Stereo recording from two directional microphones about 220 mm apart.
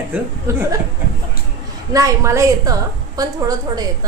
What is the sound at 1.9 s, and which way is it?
A woman's voice, 15° right (ahead or behind).